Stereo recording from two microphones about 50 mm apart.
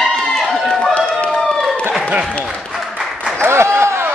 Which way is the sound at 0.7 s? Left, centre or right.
Left.